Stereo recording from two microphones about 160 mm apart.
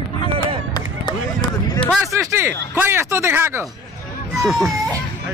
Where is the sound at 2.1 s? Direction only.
15° right (ahead or behind).